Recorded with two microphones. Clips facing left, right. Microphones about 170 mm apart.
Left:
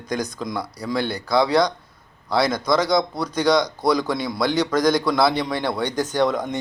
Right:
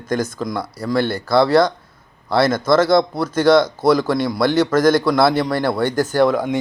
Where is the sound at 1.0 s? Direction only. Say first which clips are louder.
Right 6 dB; 50° right (ahead or behind).